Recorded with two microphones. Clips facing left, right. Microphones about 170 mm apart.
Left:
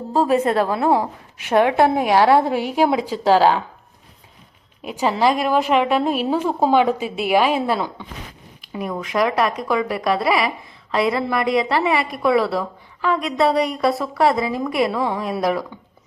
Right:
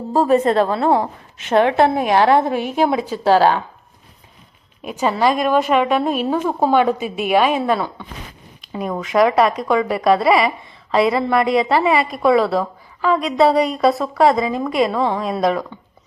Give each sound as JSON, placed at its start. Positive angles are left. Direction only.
{"t": 0.1, "sound": "a woman's voice", "side_deg": 0}
{"t": 4.8, "sound": "a woman's voice", "side_deg": 15}
{"t": 8.9, "sound": "a woman's voice", "side_deg": 0}